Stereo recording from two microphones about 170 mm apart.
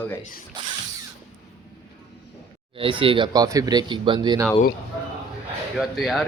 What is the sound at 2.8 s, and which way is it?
Speech, 30° right (ahead or behind).